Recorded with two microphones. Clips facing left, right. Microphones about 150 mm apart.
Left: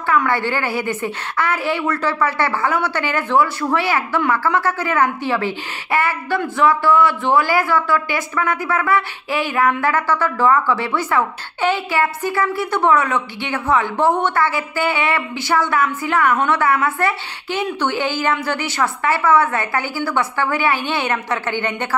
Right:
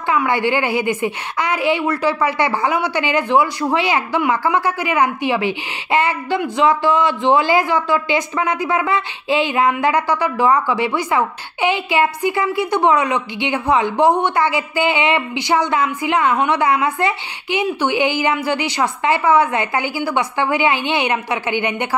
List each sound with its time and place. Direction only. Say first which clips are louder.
0.1 s a woman's voice: right 1 dB; 15° right (ahead or behind)